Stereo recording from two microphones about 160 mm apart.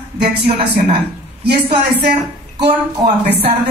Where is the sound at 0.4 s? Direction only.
90° right.